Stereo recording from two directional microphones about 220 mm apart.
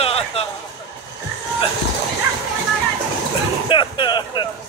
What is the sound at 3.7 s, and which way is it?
Music, 20° left (ahead or behind).